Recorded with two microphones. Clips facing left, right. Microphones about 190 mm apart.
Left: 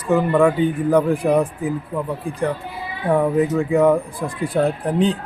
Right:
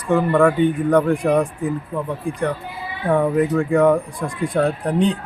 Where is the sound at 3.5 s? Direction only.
5° left (ahead or behind).